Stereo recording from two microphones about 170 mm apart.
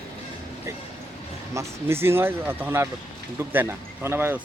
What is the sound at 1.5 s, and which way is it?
Speech, 15° right (ahead or behind).